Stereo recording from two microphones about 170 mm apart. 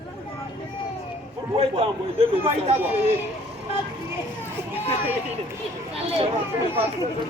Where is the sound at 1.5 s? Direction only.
35° right (ahead or behind).